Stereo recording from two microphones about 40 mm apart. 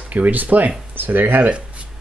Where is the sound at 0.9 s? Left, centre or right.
Right.